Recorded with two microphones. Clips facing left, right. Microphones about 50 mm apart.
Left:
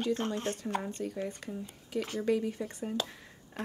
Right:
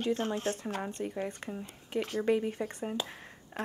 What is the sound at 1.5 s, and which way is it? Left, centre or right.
Speech, right.